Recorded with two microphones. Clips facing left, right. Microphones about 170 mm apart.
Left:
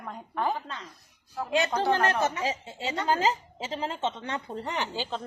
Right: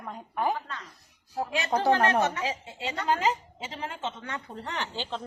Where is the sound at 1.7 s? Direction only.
35° right (ahead or behind).